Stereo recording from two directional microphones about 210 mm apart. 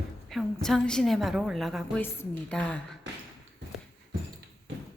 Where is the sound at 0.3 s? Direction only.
Centre (ahead or behind).